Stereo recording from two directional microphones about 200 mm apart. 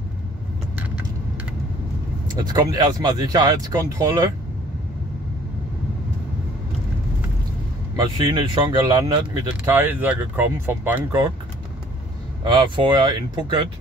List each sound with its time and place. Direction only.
2.4 s speech: 20° right (ahead or behind)
8.0 s speech: 20° right (ahead or behind)
12.4 s speech: 20° right (ahead or behind)